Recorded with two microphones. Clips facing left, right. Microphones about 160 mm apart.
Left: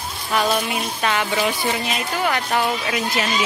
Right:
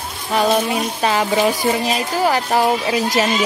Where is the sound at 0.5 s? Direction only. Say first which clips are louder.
Right 5 dB; 35° right (ahead or behind).